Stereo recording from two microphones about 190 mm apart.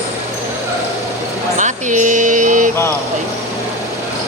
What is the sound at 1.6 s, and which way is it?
Mantra, 40° right (ahead or behind).